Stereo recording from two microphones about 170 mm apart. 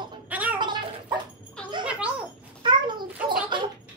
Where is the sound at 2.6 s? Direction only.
25° right (ahead or behind).